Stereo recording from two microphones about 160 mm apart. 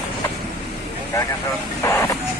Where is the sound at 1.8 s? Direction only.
15° left (ahead or behind).